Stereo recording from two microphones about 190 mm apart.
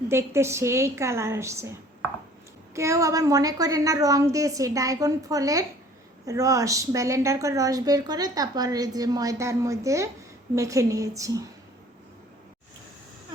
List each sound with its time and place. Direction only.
0.1 s a woman's voice: 15° right (ahead or behind)
2.7 s a woman's voice: 15° right (ahead or behind)